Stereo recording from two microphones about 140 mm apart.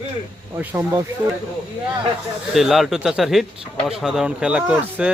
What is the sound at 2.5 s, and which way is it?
Speech, centre (ahead or behind).